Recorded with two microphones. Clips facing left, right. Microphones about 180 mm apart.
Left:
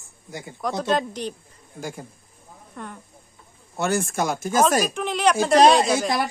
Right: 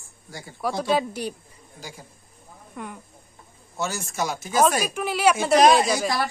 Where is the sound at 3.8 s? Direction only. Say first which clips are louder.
Left 5 dB; 55° left (ahead or behind).